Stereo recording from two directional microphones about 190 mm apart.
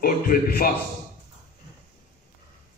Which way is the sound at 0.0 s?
50° left (ahead or behind).